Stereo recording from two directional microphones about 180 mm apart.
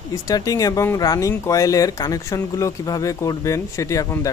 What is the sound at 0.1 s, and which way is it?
Speech, 20° left (ahead or behind).